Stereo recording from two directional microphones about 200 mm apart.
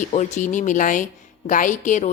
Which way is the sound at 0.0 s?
35° left (ahead or behind).